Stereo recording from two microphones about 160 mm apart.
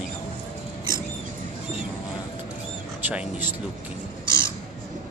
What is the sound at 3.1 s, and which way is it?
Speech, 10° right (ahead or behind).